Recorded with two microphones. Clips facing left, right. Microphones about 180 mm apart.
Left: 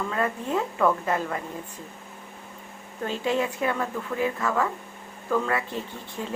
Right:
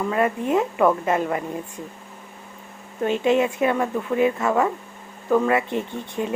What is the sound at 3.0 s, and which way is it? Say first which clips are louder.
Speech: right 7 dB; 20° right (ahead or behind).